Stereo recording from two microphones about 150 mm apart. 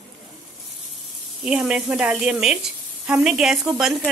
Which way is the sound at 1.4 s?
5° right (ahead or behind).